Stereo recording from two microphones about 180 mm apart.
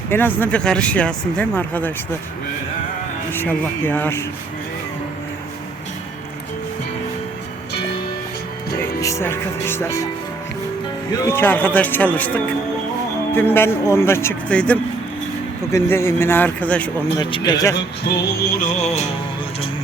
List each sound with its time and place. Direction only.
0.1 s speech: 10° left (ahead or behind)
3.3 s speech: 10° left (ahead or behind)
9.0 s speech: 15° left (ahead or behind)
11.1 s speech: 15° left (ahead or behind)
17.2 s a man's voice: 25° left (ahead or behind)
17.7 s music: 65° left (ahead or behind)
18.6 s music: 40° left (ahead or behind)